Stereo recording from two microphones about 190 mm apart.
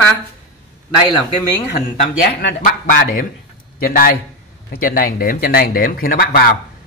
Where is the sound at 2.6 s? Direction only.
45° left (ahead or behind).